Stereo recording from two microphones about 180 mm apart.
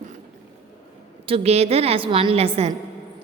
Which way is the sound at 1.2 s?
35° right (ahead or behind).